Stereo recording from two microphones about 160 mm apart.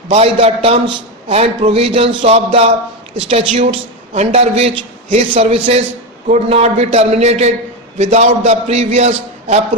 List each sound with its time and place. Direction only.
0.1 s a man's voice: 40° right (ahead or behind)